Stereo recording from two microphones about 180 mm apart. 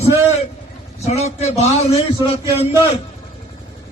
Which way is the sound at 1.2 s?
35° left (ahead or behind).